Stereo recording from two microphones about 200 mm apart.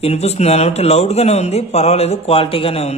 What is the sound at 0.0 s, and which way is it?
A man's voice, 30° left (ahead or behind).